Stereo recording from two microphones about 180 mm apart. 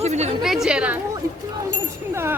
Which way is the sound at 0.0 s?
35° right (ahead or behind).